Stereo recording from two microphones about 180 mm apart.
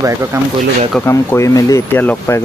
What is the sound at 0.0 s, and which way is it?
Speech, 15° right (ahead or behind).